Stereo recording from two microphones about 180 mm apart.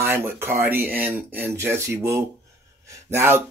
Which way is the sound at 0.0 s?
15° right (ahead or behind).